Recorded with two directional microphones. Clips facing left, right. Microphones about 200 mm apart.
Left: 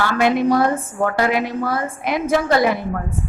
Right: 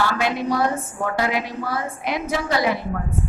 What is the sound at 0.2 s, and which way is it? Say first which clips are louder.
A woman's voice: left 6 dB; 55° left (ahead or behind).